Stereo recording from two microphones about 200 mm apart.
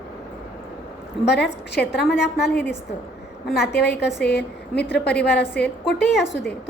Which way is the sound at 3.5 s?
55° left (ahead or behind).